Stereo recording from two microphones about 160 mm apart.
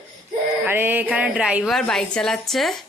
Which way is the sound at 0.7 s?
10° right (ahead or behind).